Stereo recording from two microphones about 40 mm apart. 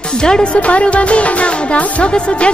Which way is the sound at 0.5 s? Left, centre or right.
Left.